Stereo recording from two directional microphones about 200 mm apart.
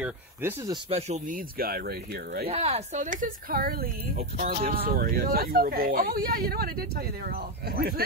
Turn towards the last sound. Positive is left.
turn(degrees=-50)  # may be behind; listen again after turning